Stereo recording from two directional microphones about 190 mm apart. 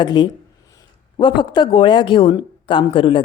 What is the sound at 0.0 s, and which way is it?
Speech, 25° left (ahead or behind).